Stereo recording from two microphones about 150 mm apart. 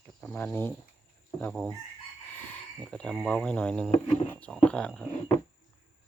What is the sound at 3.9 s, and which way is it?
Speech, 45° left (ahead or behind).